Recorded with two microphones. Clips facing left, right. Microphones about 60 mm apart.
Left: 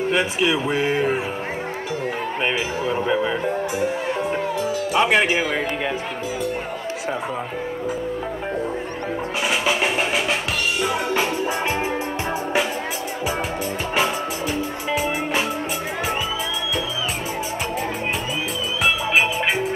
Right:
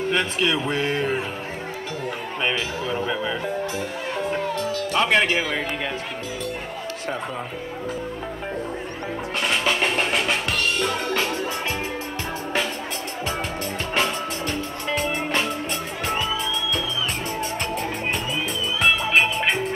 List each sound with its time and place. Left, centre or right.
0.1 s speech: centre
2.9 s music: centre
4.6 s speech: centre
9.5 s music: centre
13.9 s music: centre
18.9 s music: centre